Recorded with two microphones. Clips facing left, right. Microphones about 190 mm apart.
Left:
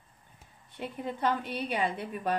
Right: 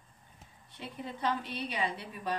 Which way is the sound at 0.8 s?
50° left (ahead or behind).